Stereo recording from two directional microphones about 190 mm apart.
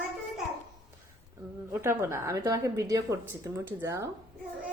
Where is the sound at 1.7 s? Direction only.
15° right (ahead or behind).